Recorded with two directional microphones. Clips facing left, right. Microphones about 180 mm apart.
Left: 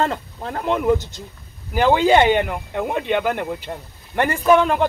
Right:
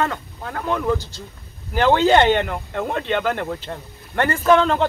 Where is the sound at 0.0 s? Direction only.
25° left (ahead or behind).